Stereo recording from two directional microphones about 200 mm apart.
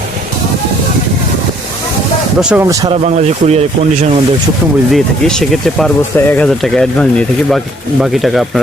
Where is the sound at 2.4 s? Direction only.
5° right (ahead or behind).